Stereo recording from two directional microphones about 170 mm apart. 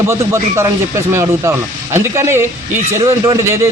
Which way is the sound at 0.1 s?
15° right (ahead or behind).